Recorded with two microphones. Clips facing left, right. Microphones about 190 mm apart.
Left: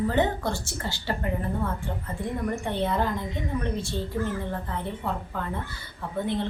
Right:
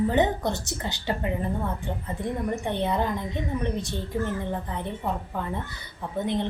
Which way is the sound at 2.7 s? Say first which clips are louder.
Even; 20° right (ahead or behind).